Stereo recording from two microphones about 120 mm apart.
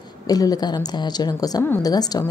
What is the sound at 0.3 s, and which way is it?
A woman's voice, 30° left (ahead or behind).